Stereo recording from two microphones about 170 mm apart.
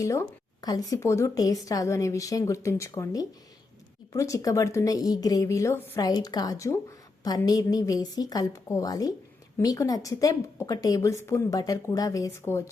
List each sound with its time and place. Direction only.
0.0 s a woman's voice: 20° left (ahead or behind)